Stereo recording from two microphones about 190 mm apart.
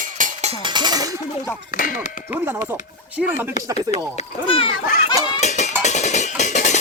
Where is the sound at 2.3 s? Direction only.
10° right (ahead or behind).